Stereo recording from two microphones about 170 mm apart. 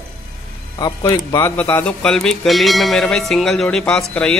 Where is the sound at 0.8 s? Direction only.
25° left (ahead or behind).